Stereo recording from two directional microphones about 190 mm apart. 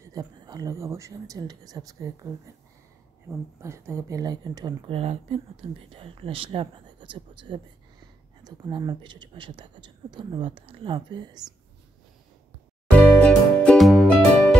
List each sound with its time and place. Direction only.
0.0 s a woman's voice: 20° right (ahead or behind)
12.9 s music: 5° left (ahead or behind)